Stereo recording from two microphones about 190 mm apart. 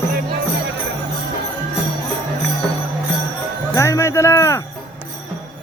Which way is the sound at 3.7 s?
15° left (ahead or behind).